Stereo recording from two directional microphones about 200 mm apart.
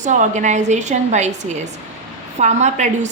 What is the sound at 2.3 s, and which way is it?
Speech, 35° right (ahead or behind).